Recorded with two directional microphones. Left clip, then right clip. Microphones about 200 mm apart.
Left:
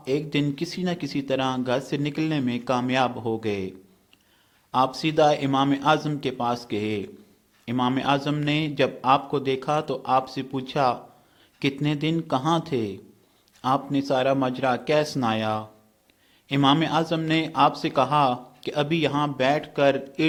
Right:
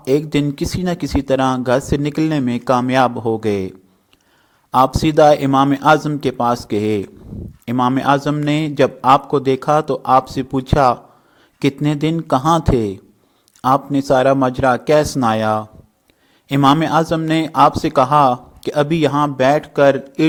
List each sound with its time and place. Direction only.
0.0 s a man's voice: 45° right (ahead or behind)